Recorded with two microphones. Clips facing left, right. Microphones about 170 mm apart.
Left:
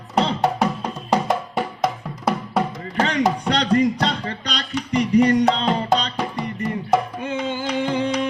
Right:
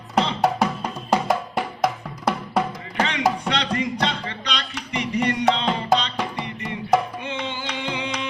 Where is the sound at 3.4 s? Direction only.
40° left (ahead or behind).